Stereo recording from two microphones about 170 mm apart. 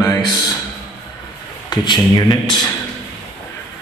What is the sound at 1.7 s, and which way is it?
Speech, 25° left (ahead or behind).